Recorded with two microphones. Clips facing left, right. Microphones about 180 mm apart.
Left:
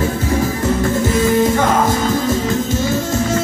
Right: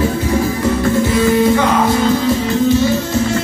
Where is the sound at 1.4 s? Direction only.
45° left (ahead or behind).